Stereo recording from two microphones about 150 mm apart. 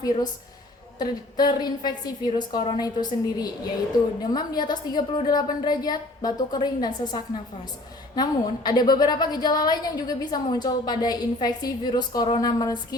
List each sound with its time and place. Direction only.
0.9 s a woman's voice: 25° left (ahead or behind)